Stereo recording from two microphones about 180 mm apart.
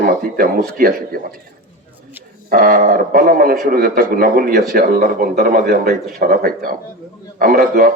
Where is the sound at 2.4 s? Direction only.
50° right (ahead or behind).